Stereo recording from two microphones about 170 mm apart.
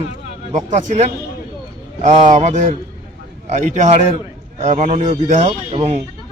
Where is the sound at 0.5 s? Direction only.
45° right (ahead or behind).